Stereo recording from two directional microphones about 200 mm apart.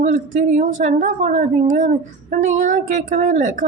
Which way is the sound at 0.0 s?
40° right (ahead or behind).